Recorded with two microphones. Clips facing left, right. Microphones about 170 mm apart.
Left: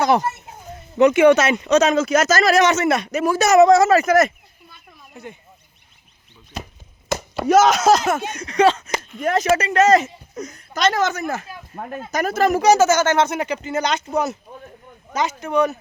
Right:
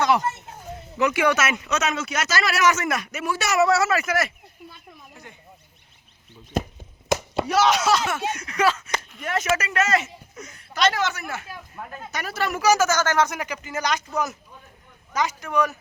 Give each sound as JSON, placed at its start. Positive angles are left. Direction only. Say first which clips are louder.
{"t": 0.0, "sound": "speech", "louder": "left 3 dB", "side_deg": 35}
{"t": 5.1, "sound": "speech", "louder": "left 12 dB", "side_deg": 20}
{"t": 6.5, "sound": "chop", "louder": "right 7 dB", "side_deg": -50}
{"t": 7.4, "sound": "speech", "louder": "left 8 dB", "side_deg": 45}
{"t": 15.4, "sound": "speech", "louder": "left 8 dB", "side_deg": 25}